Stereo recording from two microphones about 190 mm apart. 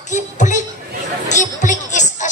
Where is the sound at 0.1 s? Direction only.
40° left (ahead or behind).